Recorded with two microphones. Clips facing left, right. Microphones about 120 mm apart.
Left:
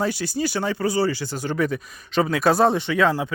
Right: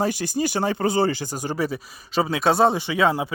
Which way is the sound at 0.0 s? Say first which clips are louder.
Right 1 dB; 45° right (ahead or behind).